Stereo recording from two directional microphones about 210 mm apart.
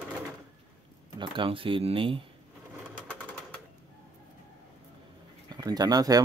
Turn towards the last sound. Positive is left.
turn(degrees=-15)  # may be behind; listen again after turning